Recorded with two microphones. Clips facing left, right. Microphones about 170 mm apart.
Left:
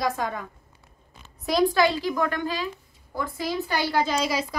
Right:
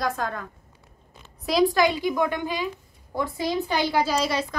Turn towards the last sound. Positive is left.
turn(degrees=0)  # may be behind; listen again after turning